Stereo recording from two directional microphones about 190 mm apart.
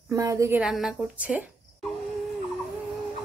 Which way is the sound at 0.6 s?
5° right (ahead or behind).